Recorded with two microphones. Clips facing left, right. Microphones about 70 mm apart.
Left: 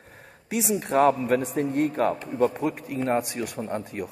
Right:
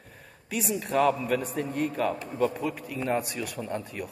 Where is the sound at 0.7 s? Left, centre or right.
Left.